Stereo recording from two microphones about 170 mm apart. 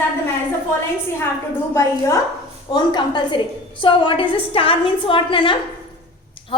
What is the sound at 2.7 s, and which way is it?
A woman's voice, 25° left (ahead or behind).